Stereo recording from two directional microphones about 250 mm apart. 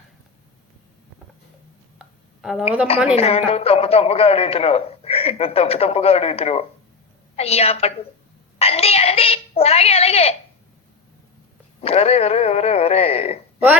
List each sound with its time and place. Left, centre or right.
2.4 s a woman's voice: centre
3.2 s a man's voice: left
8.5 s a sound: left
11.8 s a man's voice: left